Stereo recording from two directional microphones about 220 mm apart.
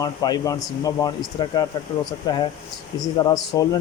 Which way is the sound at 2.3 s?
15° left (ahead or behind).